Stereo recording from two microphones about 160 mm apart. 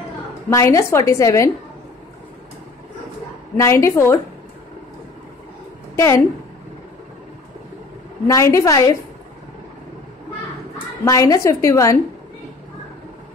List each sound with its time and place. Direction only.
0.5 s a woman's voice: 20° left (ahead or behind)
3.5 s a woman's voice: 15° left (ahead or behind)
5.9 s a woman's voice: 20° left (ahead or behind)
8.3 s a woman's voice: 20° left (ahead or behind)
11.1 s a woman's voice: 20° left (ahead or behind)